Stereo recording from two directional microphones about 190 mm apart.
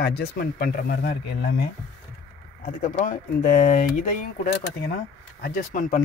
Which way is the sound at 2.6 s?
40° left (ahead or behind).